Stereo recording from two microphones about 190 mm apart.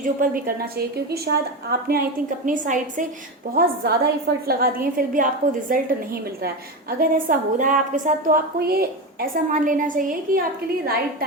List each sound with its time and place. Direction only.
0.0 s a woman's voice: 45° right (ahead or behind)
2.5 s a woman's voice: 45° right (ahead or behind)
3.5 s a woman's voice: 55° right (ahead or behind)
7.0 s a woman's voice: 45° right (ahead or behind)